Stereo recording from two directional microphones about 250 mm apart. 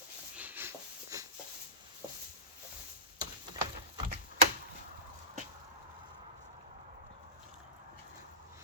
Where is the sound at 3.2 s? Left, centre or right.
Centre.